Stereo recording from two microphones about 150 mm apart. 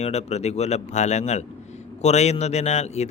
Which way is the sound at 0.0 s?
45° left (ahead or behind).